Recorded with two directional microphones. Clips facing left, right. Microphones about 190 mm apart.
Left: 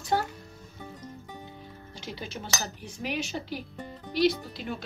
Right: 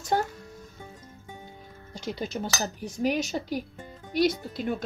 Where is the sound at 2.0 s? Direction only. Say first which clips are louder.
Right 7 dB; 45° right (ahead or behind).